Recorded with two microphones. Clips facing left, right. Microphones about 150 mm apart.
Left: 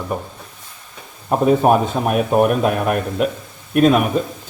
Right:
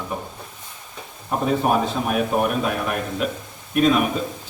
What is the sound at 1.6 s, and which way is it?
A man's voice, 55° left (ahead or behind).